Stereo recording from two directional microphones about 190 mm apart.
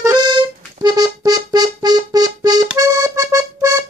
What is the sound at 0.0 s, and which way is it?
Accordion, 20° right (ahead or behind).